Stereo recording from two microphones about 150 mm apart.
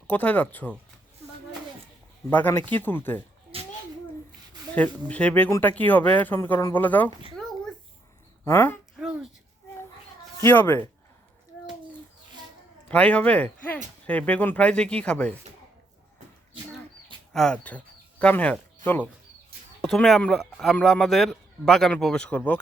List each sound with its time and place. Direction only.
0.1 s speech: 10° left (ahead or behind)
2.3 s speech: 10° left (ahead or behind)
3.5 s a sound: 40° right (ahead or behind)
5.0 s speech: 10° left (ahead or behind)
8.4 s speech: 15° left (ahead or behind)
9.0 s a sound: 5° right (ahead or behind)
10.4 s speech: 15° left (ahead or behind)
12.9 s speech: 10° left (ahead or behind)
17.3 s speech: 5° left (ahead or behind)
19.8 s speech: 5° left (ahead or behind)